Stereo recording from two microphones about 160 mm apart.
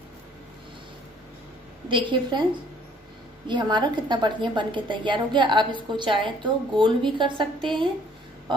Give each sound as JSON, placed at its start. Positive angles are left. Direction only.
{"t": 1.9, "sound": "a woman's voice", "side_deg": -30}
{"t": 3.4, "sound": "a woman's voice", "side_deg": -30}